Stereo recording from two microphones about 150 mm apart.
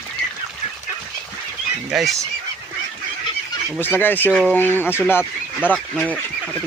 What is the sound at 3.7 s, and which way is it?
Speech, 15° left (ahead or behind).